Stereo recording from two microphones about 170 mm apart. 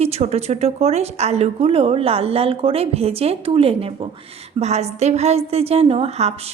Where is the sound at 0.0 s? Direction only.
40° right (ahead or behind).